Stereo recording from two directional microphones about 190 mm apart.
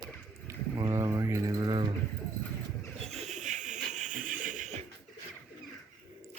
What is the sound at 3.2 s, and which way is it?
Bird, 40° right (ahead or behind).